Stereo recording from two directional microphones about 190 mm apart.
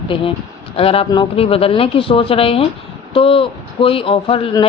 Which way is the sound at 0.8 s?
30° left (ahead or behind).